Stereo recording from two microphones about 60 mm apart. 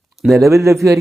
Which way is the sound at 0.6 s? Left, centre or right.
Right.